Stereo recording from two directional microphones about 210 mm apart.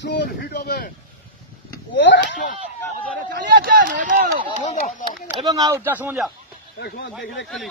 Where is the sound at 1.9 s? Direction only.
60° left (ahead or behind).